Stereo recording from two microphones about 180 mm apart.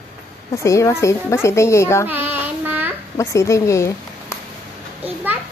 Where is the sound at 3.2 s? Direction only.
15° left (ahead or behind).